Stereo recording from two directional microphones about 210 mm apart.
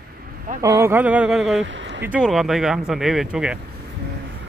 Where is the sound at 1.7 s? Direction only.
60° right (ahead or behind).